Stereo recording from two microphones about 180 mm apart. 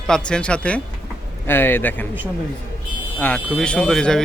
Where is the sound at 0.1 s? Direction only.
5° left (ahead or behind).